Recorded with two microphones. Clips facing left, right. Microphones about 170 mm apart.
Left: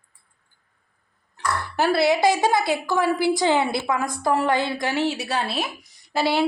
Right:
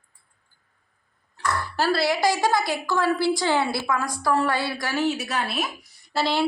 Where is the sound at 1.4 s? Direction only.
20° left (ahead or behind).